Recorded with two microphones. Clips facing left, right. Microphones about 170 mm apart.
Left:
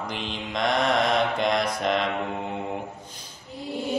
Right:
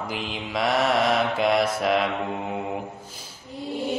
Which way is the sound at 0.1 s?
5° right (ahead or behind).